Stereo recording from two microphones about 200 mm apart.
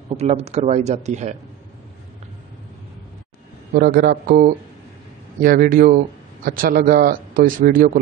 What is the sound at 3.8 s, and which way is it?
A man's voice, 50° right (ahead or behind).